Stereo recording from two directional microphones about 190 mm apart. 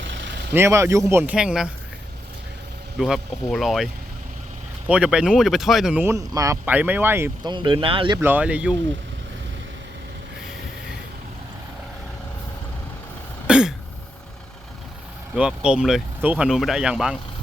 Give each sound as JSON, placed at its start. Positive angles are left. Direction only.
{"t": 0.0, "sound": "vehicle", "side_deg": -75}
{"t": 0.5, "sound": "speech", "side_deg": -15}
{"t": 3.0, "sound": "speech", "side_deg": 0}
{"t": 4.9, "sound": "speech", "side_deg": -5}
{"t": 7.4, "sound": "speech", "side_deg": -25}
{"t": 8.2, "sound": "speech", "side_deg": -10}
{"t": 13.5, "sound": "throat clearing", "side_deg": -5}
{"t": 15.4, "sound": "speech", "side_deg": -5}